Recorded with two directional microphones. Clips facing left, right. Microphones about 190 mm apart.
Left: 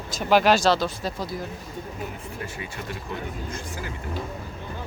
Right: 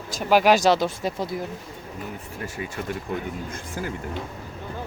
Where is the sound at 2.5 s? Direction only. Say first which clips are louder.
Right 4 dB; 45° right (ahead or behind).